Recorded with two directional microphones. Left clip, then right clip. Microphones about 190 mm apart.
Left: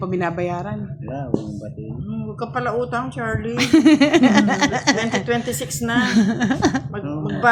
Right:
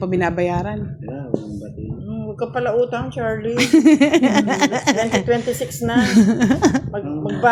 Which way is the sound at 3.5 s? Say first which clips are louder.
Right 1 dB; 20° right (ahead or behind).